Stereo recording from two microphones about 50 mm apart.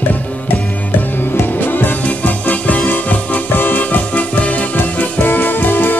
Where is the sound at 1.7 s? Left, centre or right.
Left.